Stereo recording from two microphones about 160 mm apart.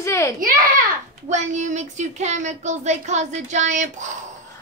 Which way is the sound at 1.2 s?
50° right (ahead or behind).